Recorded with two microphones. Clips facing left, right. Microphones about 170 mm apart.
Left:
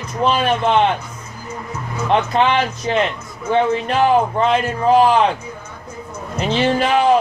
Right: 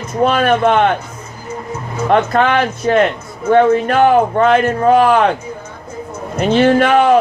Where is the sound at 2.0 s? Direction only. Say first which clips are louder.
Right 3 dB; 55° right (ahead or behind).